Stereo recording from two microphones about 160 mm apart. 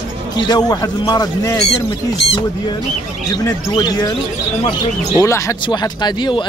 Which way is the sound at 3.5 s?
25° left (ahead or behind).